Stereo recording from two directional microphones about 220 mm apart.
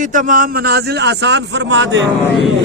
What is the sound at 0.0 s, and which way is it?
A man's voice, 35° right (ahead or behind).